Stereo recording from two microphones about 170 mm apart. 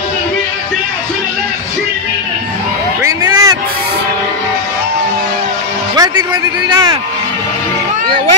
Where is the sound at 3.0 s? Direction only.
20° right (ahead or behind).